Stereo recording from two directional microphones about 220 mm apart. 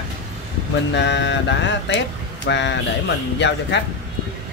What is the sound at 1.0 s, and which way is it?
Speech, 50° left (ahead or behind).